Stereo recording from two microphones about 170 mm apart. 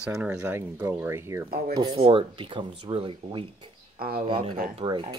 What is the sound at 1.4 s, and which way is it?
Speech, 60° right (ahead or behind).